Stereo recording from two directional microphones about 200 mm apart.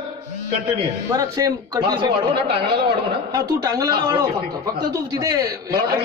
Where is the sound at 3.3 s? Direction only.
20° right (ahead or behind).